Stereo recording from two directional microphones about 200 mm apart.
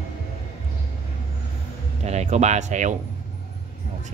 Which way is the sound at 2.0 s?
35° right (ahead or behind).